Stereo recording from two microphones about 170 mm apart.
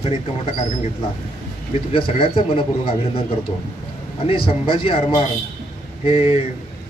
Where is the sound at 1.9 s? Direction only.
30° left (ahead or behind).